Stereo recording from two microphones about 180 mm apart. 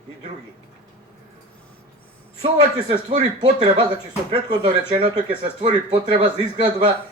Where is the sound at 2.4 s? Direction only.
35° right (ahead or behind).